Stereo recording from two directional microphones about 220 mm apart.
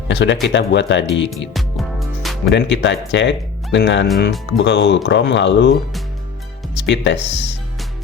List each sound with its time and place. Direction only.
0.1 s speech: 50° left (ahead or behind)
1.5 s music: centre (ahead or behind)
2.5 s speech: 50° left (ahead or behind)
6.8 s speech: 55° left (ahead or behind)